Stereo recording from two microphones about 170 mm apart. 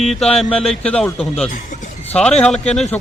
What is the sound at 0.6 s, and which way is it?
Speech, 5° left (ahead or behind).